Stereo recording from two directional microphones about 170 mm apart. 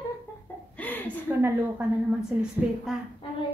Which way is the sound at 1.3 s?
10° right (ahead or behind).